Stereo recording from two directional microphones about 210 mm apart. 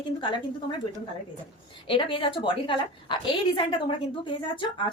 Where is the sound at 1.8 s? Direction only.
25° left (ahead or behind).